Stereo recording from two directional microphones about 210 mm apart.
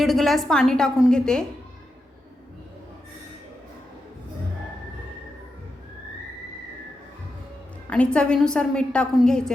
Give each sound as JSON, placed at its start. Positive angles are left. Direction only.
{"t": 0.0, "sound": "a woman's voice", "side_deg": 0}
{"t": 7.9, "sound": "a woman's voice", "side_deg": 5}